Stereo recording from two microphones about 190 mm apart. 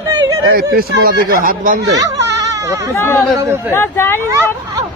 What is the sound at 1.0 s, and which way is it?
Speech, 50° right (ahead or behind).